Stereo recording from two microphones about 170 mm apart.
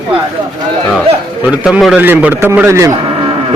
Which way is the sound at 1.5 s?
5° right (ahead or behind).